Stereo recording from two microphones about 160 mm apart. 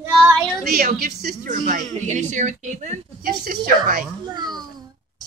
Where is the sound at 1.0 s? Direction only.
80° right.